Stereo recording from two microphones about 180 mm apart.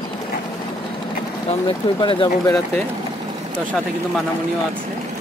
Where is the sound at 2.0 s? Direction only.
25° left (ahead or behind).